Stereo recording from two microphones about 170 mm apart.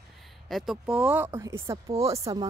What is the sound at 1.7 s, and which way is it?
Speech, 35° right (ahead or behind).